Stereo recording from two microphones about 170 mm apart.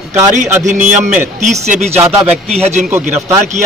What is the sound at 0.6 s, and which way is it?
A man's voice, 45° right (ahead or behind).